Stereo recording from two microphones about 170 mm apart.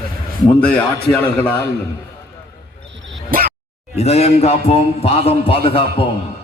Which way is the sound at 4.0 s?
40° left (ahead or behind).